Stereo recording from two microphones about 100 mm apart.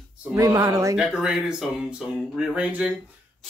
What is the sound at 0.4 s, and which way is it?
Speech, 35° right (ahead or behind).